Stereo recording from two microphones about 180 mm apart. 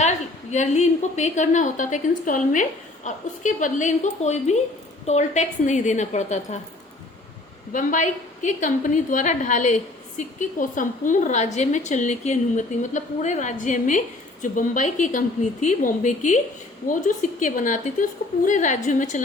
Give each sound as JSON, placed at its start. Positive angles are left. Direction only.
{"t": 0.5, "sound": "a woman's voice", "side_deg": 40}
{"t": 7.7, "sound": "a woman's voice", "side_deg": 45}